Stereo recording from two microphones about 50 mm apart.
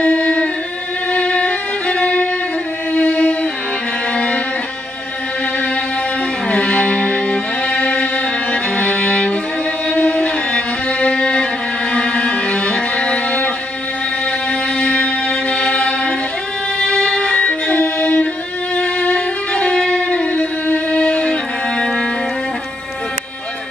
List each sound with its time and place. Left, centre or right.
0.0 s music: left
1.1 s violin: left
2.9 s a sound: left
4.1 s music: left
6.4 s music: centre
14.5 s music: centre